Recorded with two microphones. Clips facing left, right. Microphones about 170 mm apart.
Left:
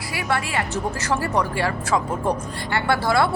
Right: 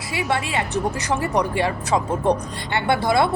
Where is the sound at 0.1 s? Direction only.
20° right (ahead or behind).